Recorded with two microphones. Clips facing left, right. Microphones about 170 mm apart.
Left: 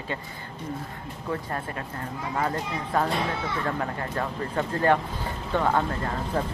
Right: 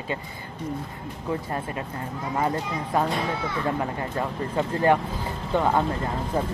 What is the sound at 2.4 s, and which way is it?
Speech, 15° right (ahead or behind).